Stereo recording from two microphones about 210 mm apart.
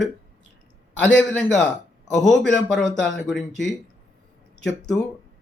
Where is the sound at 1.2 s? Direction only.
5° left (ahead or behind).